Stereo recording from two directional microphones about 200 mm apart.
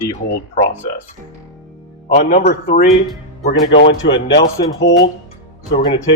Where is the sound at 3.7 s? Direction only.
65° left (ahead or behind).